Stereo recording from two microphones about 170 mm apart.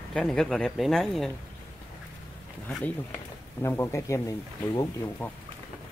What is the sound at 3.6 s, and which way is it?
Speech, 15° left (ahead or behind).